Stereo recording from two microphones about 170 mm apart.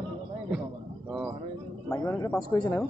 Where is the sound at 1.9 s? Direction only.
15° left (ahead or behind).